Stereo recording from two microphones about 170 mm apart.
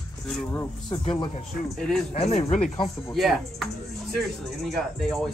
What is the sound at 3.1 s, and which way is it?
Speech, centre (ahead or behind).